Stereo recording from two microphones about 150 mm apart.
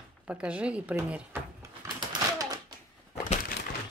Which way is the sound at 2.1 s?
25° right (ahead or behind).